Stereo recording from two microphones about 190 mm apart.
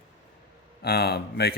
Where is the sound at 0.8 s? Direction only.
55° left (ahead or behind).